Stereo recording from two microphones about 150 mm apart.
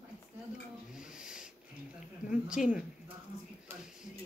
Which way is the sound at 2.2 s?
5° right (ahead or behind).